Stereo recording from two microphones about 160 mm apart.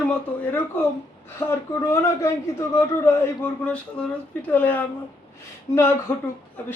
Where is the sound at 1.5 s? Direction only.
15° left (ahead or behind).